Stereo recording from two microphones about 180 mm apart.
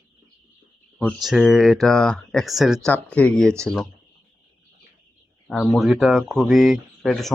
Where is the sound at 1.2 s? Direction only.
Centre (ahead or behind).